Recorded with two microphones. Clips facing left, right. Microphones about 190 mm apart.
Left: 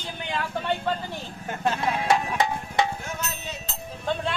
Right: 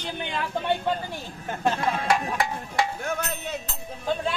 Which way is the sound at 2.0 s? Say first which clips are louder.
Left 4 dB; 20° left (ahead or behind).